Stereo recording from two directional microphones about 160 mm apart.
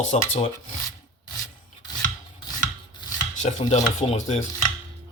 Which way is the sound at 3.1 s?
50° left (ahead or behind).